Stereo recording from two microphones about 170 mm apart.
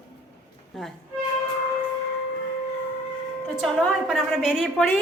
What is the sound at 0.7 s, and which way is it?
Speech, centre (ahead or behind).